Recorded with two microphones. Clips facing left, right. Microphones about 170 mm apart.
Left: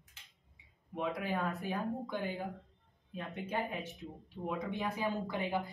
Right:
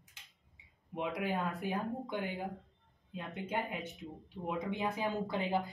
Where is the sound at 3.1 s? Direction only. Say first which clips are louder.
Even; 20° right (ahead or behind).